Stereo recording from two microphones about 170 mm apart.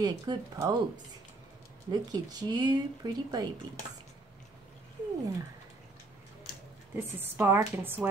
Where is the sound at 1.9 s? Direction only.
25° right (ahead or behind).